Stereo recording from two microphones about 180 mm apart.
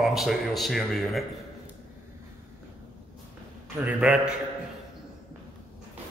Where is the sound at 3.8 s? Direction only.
10° right (ahead or behind).